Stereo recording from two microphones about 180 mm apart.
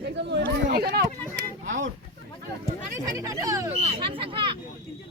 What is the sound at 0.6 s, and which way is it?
Speech, 60° right (ahead or behind).